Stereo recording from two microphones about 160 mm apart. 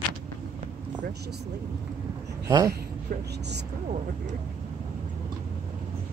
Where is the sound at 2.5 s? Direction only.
20° right (ahead or behind).